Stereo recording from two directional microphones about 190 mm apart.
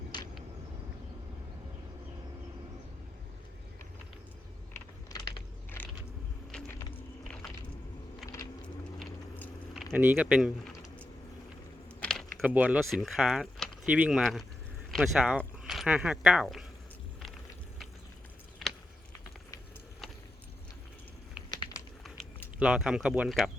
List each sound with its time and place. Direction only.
4.7 s computer keyboard: 20° left (ahead or behind)
8.6 s vehicle: 5° left (ahead or behind)
9.9 s speech: 10° right (ahead or behind)
11.9 s keys jangling: 5° left (ahead or behind)
12.4 s speech: 10° right (ahead or behind)
22.0 s a sound: 5° left (ahead or behind)
22.5 s speech: 5° right (ahead or behind)